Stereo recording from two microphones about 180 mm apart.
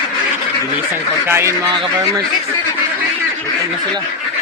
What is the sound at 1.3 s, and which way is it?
Speech, 15° right (ahead or behind).